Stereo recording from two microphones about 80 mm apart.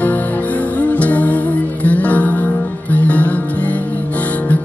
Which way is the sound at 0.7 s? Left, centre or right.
Centre.